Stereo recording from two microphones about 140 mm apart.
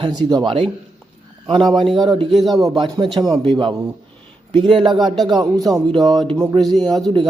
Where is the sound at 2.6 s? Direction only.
25° right (ahead or behind).